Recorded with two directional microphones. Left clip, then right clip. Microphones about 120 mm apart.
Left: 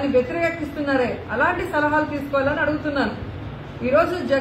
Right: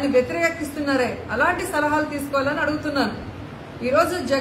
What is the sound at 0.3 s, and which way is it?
A woman's voice, 15° right (ahead or behind).